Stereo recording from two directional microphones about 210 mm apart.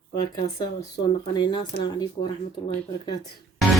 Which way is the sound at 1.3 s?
20° left (ahead or behind).